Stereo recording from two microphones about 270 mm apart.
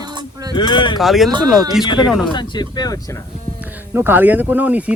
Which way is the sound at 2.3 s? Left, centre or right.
Centre.